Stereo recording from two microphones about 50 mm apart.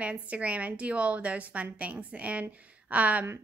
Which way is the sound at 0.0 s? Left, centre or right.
Right.